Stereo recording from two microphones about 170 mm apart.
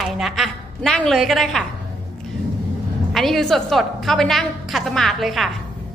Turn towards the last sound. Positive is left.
turn(degrees=0)  # may be behind; listen again after turning